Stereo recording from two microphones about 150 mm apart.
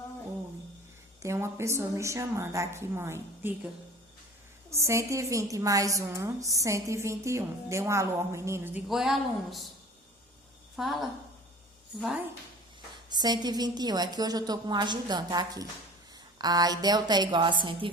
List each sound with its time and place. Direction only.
1.2 s a woman's voice: 20° right (ahead or behind)
4.7 s a woman's voice: 20° right (ahead or behind)
8.9 s speech: centre (ahead or behind)
10.8 s speech: centre (ahead or behind)
13.1 s a woman's voice: 25° right (ahead or behind)